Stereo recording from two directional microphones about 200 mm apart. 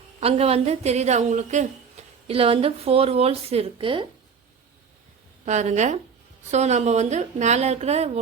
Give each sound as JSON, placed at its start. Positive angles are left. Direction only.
{"t": 0.2, "sound": "a woman's voice", "side_deg": -30}
{"t": 5.5, "sound": "a woman's voice", "side_deg": -35}